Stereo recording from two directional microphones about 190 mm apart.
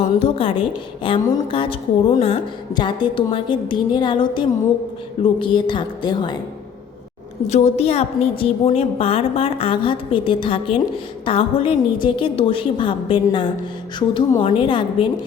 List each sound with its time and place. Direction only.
0.0 s a woman's voice: 30° left (ahead or behind)
7.4 s a woman's voice: 35° left (ahead or behind)